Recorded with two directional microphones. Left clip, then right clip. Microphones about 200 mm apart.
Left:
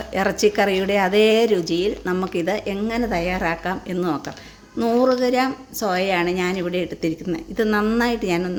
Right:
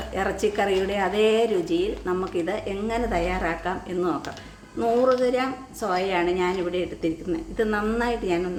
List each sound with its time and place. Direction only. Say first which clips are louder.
0.1 s a woman's voice: left 6 dB; 45° left (ahead or behind)